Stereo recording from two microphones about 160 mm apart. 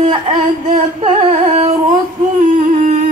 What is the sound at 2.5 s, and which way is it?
Music, 55° right (ahead or behind).